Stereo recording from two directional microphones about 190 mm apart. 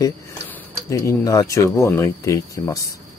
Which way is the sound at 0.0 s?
15° left (ahead or behind).